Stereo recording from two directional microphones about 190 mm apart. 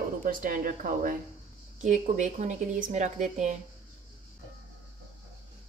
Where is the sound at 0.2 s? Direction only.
45° right (ahead or behind).